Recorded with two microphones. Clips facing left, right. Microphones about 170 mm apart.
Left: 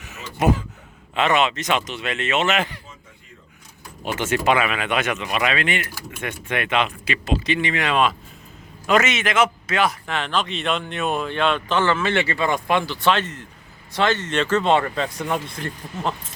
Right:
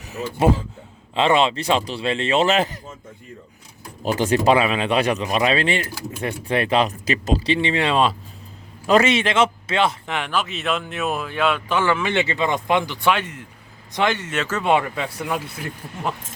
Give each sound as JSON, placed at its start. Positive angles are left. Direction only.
{"t": 0.0, "sound": "speech", "side_deg": -35}
{"t": 4.0, "sound": "speech", "side_deg": -35}
{"t": 10.2, "sound": "speech", "side_deg": -10}